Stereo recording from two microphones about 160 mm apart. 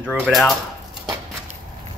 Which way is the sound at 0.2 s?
Centre (ahead or behind).